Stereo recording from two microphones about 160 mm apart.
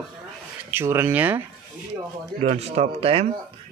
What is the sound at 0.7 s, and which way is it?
Speech, 15° right (ahead or behind).